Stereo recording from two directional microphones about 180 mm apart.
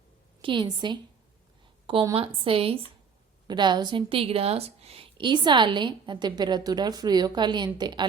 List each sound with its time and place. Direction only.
0.4 s a woman's voice: 25° right (ahead or behind)
2.1 s a woman's voice: 30° right (ahead or behind)